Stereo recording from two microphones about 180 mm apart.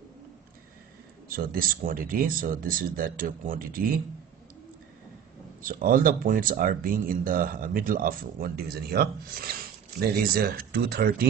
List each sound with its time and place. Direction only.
1.3 s speech: 55° right (ahead or behind)
5.6 s speech: 50° right (ahead or behind)